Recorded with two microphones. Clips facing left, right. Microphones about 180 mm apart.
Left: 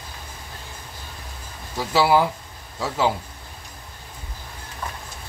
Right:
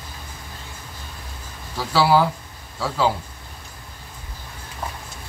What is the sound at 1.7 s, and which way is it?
A man's voice, 20° left (ahead or behind).